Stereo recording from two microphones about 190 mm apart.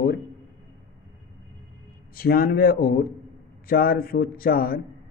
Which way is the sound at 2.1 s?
50° left (ahead or behind).